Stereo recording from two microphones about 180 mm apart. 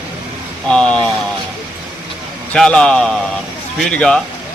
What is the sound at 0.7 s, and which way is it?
Speech, 5° left (ahead or behind).